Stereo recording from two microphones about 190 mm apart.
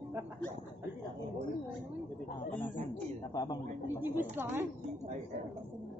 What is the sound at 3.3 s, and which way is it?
Speech, 20° left (ahead or behind).